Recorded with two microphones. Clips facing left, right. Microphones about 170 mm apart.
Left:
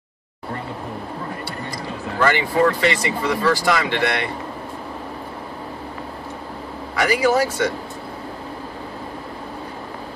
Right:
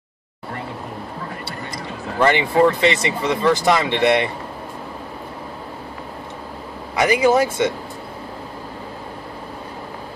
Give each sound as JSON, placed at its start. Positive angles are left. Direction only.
{"t": 2.1, "sound": "speech", "side_deg": -20}
{"t": 7.0, "sound": "speech", "side_deg": -20}